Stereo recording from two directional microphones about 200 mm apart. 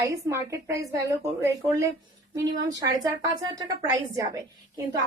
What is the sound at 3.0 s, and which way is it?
A woman's voice, 20° right (ahead or behind).